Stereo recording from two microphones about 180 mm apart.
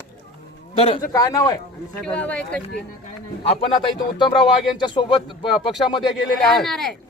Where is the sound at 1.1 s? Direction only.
20° left (ahead or behind).